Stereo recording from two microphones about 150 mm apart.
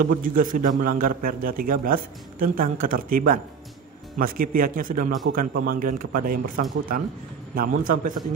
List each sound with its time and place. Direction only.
0.0 s a man's voice: 65° right (ahead or behind)